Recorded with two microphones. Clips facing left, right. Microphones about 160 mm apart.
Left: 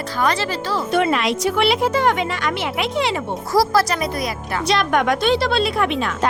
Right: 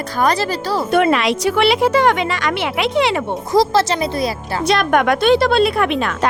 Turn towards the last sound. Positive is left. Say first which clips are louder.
# right 2 dB
turn(degrees=-65)  # may be behind; listen again after turning